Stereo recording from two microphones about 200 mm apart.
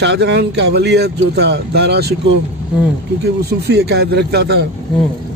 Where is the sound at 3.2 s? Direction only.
55° right (ahead or behind).